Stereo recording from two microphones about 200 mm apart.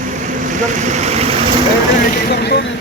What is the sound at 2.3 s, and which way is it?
Vehicle, 55° left (ahead or behind).